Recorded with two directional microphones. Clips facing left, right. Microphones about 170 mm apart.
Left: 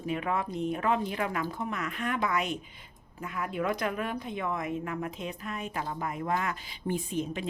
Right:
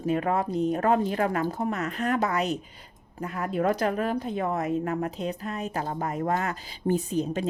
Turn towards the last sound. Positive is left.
turn(degrees=-40)  # may be behind; listen again after turning